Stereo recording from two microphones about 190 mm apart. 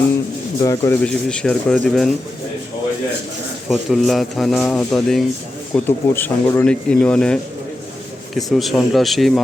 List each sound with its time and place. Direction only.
0.6 s speech: 15° left (ahead or behind)
1.0 s speech: 5° left (ahead or behind)
3.7 s speech: centre (ahead or behind)
8.4 s speech: centre (ahead or behind)